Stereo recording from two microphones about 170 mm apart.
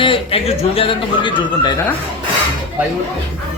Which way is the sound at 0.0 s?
30° left (ahead or behind).